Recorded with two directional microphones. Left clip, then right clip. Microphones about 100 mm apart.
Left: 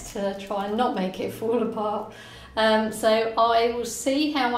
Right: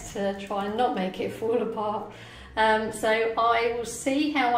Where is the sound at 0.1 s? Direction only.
45° left (ahead or behind).